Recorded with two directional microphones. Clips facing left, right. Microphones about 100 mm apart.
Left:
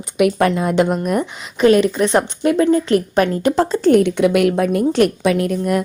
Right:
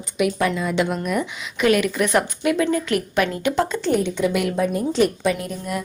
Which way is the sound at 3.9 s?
60° left (ahead or behind).